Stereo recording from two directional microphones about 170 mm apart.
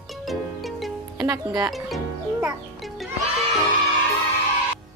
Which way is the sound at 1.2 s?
20° right (ahead or behind).